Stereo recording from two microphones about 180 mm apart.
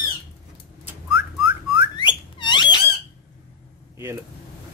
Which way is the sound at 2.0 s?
25° left (ahead or behind).